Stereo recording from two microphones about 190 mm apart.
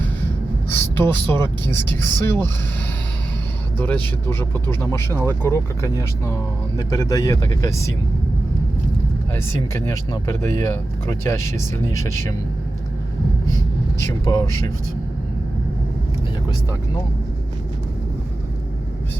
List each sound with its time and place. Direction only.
0.9 s speech: 10° left (ahead or behind)
3.8 s speech: 10° left (ahead or behind)
9.3 s speech: 15° left (ahead or behind)
14.1 s speech: 20° left (ahead or behind)